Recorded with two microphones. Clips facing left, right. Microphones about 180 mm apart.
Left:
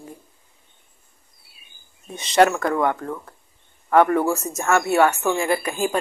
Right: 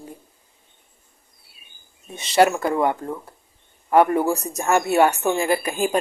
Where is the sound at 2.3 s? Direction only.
10° right (ahead or behind).